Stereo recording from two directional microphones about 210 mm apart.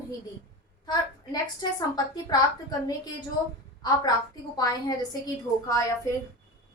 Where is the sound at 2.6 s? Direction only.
20° left (ahead or behind).